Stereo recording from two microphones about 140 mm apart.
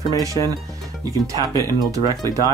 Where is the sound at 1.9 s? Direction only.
25° right (ahead or behind).